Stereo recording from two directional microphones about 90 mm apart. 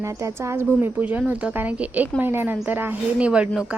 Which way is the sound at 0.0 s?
35° right (ahead or behind).